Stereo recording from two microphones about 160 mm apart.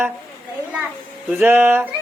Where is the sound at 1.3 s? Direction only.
10° right (ahead or behind).